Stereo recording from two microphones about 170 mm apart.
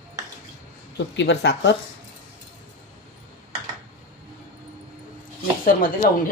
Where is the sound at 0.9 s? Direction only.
90° left.